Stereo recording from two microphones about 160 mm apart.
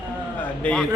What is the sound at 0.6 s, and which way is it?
Speech, 5° left (ahead or behind).